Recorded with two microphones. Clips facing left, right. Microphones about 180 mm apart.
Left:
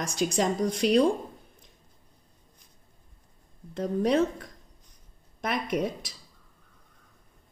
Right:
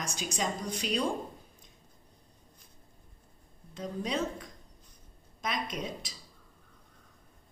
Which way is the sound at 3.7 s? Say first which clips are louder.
Left 9 dB; 55° left (ahead or behind).